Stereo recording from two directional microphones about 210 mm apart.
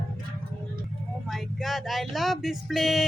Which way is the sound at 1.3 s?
Centre (ahead or behind).